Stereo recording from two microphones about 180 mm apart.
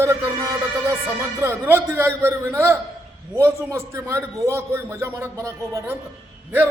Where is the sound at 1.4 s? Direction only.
10° right (ahead or behind).